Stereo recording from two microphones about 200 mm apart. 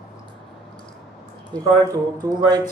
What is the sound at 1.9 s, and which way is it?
Speech, 20° right (ahead or behind).